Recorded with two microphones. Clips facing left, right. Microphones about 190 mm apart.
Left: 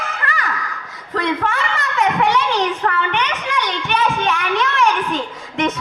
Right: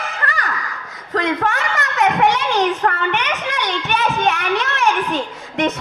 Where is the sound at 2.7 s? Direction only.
45° right (ahead or behind).